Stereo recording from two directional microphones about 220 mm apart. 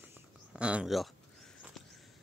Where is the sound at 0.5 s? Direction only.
5° right (ahead or behind).